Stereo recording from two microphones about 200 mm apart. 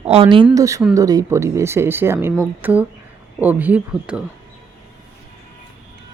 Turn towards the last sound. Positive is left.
turn(degrees=-5)  # may be behind; listen again after turning